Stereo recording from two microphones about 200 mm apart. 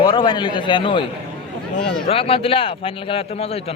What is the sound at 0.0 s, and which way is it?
A man's voice, 20° left (ahead or behind).